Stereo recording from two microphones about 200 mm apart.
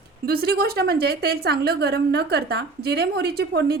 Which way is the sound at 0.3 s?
50° right (ahead or behind).